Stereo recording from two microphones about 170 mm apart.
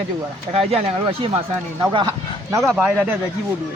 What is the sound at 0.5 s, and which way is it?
Speech, 35° right (ahead or behind).